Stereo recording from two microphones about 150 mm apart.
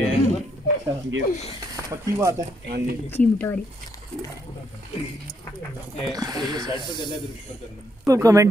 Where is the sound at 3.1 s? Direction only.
10° left (ahead or behind).